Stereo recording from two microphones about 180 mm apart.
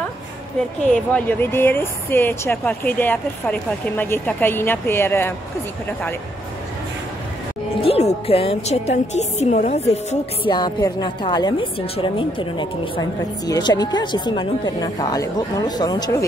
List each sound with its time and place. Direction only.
0.8 s speech: 5° left (ahead or behind)
7.8 s a woman's voice: 35° left (ahead or behind)
10.4 s speech: 25° left (ahead or behind)